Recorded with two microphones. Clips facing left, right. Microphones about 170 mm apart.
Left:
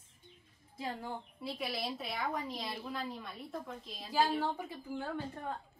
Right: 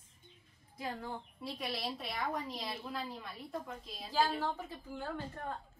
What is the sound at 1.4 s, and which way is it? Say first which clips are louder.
A woman's voice: left 1 dB; centre (ahead or behind).